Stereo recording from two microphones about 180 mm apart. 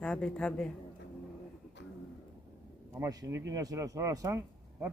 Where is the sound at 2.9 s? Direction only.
20° right (ahead or behind).